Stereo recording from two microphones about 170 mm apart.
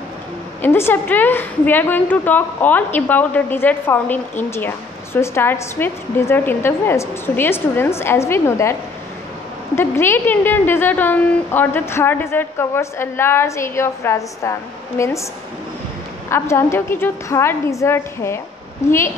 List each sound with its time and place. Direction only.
0.6 s a woman's voice: 15° left (ahead or behind)
9.8 s a woman's voice: 15° left (ahead or behind)
16.3 s a woman's voice: 15° left (ahead or behind)